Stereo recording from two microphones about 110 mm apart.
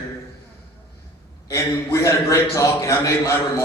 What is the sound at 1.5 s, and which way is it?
A man's voice, 25° left (ahead or behind).